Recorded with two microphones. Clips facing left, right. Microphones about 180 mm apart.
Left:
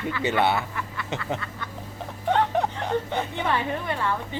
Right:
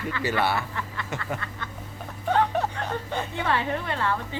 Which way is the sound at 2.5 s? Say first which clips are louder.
Left 3 dB; 20° left (ahead or behind).